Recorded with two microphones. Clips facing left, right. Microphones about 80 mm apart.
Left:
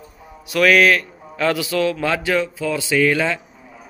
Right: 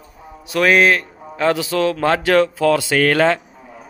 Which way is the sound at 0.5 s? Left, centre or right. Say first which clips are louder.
Even; right.